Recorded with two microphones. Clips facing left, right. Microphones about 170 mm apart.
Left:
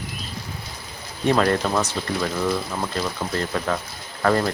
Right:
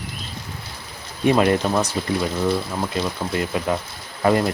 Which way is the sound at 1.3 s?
20° right (ahead or behind).